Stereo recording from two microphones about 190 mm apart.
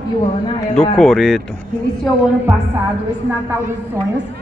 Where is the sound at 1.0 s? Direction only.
Centre (ahead or behind).